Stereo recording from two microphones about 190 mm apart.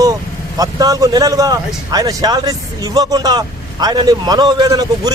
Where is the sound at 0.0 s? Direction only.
20° right (ahead or behind).